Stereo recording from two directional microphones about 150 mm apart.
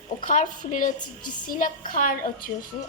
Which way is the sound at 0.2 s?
60° left (ahead or behind).